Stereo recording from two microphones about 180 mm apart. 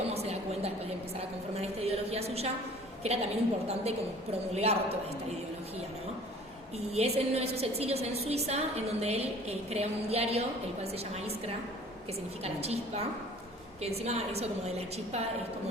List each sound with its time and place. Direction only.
0.1 s a sound: 35° right (ahead or behind)
3.0 s a woman's voice: 35° right (ahead or behind)
6.7 s a woman's voice: 35° right (ahead or behind)